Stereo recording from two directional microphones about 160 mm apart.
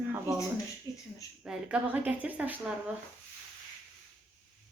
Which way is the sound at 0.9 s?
20° left (ahead or behind).